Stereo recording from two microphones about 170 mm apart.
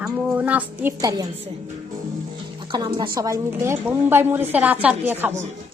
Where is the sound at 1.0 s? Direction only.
20° right (ahead or behind).